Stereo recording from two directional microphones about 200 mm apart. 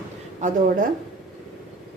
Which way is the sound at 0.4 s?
45° right (ahead or behind).